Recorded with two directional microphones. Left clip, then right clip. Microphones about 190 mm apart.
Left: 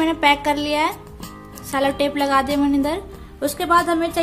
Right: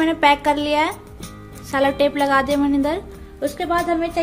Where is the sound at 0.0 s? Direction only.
10° right (ahead or behind).